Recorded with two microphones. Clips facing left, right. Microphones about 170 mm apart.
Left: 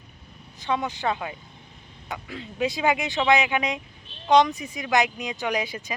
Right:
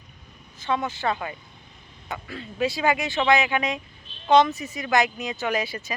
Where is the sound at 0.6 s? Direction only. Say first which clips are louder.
Even; 15° left (ahead or behind).